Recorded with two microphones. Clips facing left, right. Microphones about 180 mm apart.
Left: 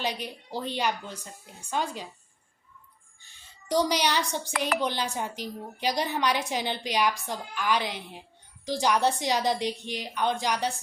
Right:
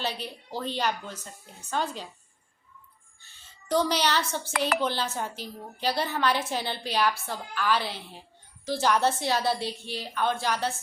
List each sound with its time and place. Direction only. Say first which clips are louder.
0.0 s a woman's voice: left 1 dB; 15° left (ahead or behind)
3.2 s a sound: left 1 dB; 15° left (ahead or behind)
4.8 s a woman's voice: even; 15° left (ahead or behind)